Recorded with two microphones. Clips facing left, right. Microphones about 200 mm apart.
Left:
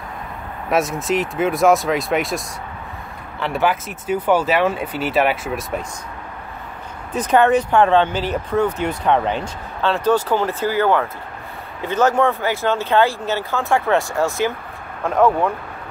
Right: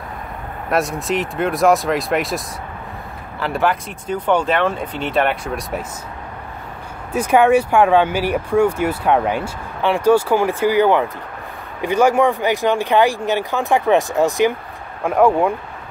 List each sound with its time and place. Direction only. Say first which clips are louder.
0.7 s speech: left 1 dB; centre (ahead or behind)
7.1 s speech: right 2 dB; 10° right (ahead or behind)